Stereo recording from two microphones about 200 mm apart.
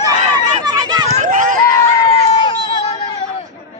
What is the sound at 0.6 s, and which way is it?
Run, 20° right (ahead or behind).